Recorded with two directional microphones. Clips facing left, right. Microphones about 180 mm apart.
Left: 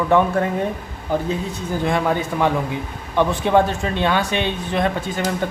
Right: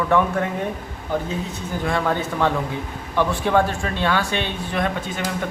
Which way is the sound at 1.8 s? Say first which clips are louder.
Left 2 dB; 15° left (ahead or behind).